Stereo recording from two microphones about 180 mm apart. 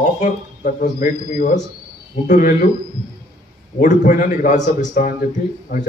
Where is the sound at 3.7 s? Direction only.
45° left (ahead or behind).